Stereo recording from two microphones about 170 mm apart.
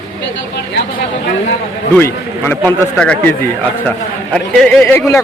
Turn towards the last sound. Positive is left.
turn(degrees=15)  # may be behind; listen again after turning